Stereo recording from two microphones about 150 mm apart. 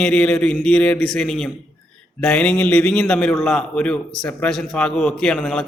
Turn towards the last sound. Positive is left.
turn(degrees=5)  # may be behind; listen again after turning